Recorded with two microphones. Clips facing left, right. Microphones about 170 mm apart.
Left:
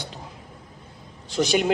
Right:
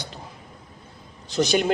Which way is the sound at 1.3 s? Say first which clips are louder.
Right 1 dB; 40° right (ahead or behind).